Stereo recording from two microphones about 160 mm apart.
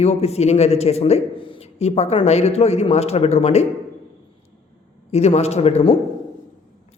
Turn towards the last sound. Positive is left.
turn(degrees=40)  # may be behind; listen again after turning